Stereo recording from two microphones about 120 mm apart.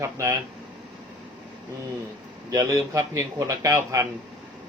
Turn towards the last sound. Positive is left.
turn(degrees=-25)  # may be behind; listen again after turning